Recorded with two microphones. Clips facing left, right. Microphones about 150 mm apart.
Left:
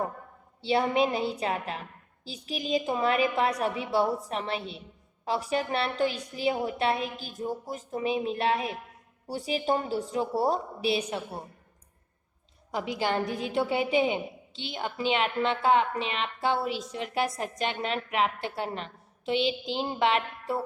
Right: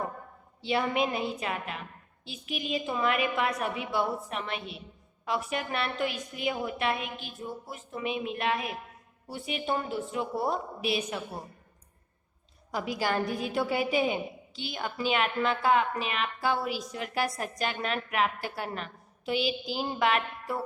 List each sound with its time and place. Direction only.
0.6 s a woman's voice: 30° left (ahead or behind)
12.7 s a woman's voice: 20° left (ahead or behind)